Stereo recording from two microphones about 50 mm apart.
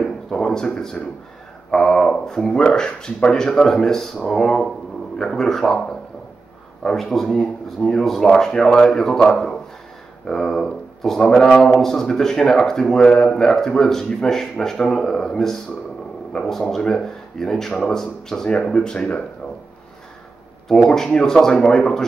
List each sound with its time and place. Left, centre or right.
0.3 s speech: centre
20.6 s speech: centre